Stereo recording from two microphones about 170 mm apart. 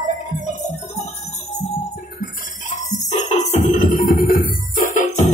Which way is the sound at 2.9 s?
45° left (ahead or behind).